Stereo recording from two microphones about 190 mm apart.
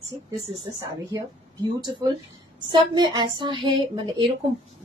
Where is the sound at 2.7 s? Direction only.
25° right (ahead or behind).